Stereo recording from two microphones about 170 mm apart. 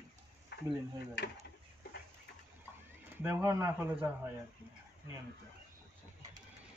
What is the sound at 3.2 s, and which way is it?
Speech, 15° right (ahead or behind).